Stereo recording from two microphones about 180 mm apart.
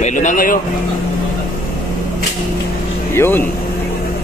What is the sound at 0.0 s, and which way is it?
Speech, 45° left (ahead or behind).